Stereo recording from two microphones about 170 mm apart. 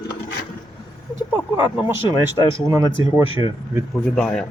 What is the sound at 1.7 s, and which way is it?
Speech, 10° right (ahead or behind).